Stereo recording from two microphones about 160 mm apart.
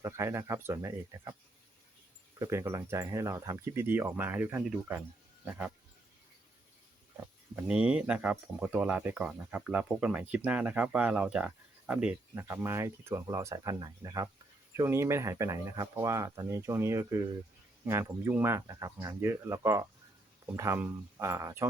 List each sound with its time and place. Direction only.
0.0 s speech: 15° right (ahead or behind)
2.4 s speech: 15° right (ahead or behind)
7.5 s speech: 5° right (ahead or behind)